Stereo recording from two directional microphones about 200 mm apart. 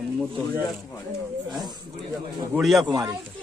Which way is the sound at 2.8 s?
20° right (ahead or behind).